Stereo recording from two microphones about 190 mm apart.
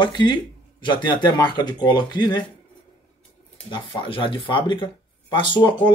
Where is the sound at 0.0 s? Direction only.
25° left (ahead or behind).